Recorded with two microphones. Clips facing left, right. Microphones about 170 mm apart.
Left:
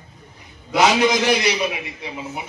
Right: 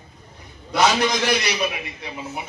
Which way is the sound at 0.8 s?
5° left (ahead or behind).